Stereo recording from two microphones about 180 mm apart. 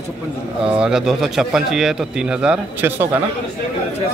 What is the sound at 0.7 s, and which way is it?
A man's voice, 5° right (ahead or behind).